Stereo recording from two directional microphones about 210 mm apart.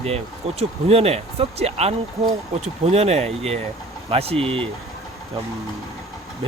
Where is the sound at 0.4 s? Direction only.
30° right (ahead or behind).